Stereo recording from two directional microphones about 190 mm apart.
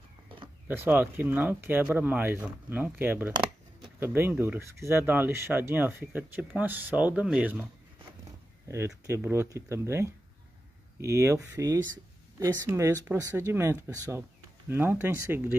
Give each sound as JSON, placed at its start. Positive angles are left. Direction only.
{"t": 0.7, "sound": "speech", "side_deg": -10}
{"t": 8.6, "sound": "speech", "side_deg": -15}